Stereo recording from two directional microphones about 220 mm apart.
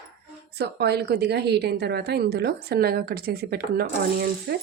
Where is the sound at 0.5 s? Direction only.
50° right (ahead or behind).